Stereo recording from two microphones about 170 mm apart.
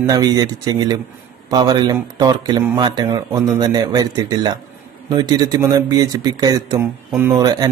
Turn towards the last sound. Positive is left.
turn(degrees=-25)  # may be behind; listen again after turning